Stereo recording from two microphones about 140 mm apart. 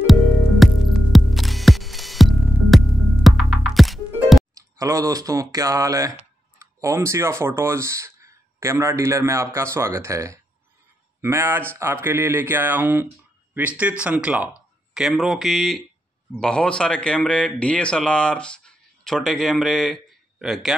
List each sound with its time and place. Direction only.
0.0 s music: centre (ahead or behind)
4.6 s speech: 25° right (ahead or behind); by 20.7 s centre (ahead or behind)